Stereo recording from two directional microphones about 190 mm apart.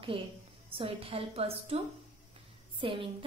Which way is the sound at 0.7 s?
30° right (ahead or behind).